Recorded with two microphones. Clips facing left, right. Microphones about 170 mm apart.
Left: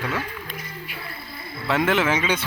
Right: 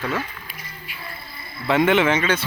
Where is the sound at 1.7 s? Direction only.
Centre (ahead or behind).